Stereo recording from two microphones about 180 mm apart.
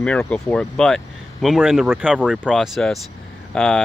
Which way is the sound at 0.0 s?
5° left (ahead or behind).